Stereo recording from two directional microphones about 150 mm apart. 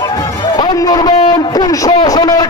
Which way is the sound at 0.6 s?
25° left (ahead or behind).